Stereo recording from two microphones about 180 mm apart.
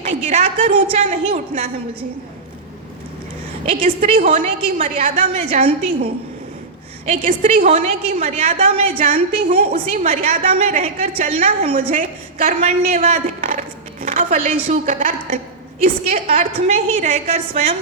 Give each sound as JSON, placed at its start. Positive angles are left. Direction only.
{"t": 0.3, "sound": "a woman's voice", "side_deg": -35}
{"t": 3.7, "sound": "a woman's voice", "side_deg": -30}
{"t": 7.1, "sound": "a woman's voice", "side_deg": -35}